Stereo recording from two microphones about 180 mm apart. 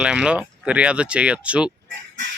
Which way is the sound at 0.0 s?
5° right (ahead or behind).